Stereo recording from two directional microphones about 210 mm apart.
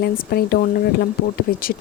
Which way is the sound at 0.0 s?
45° left (ahead or behind).